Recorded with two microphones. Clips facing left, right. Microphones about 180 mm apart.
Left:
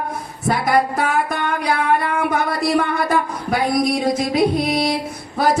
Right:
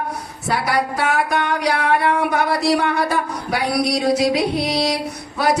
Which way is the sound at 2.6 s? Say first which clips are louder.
Even; 75° right (ahead or behind).